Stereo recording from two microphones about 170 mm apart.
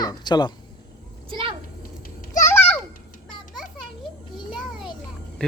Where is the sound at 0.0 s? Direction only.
25° left (ahead or behind).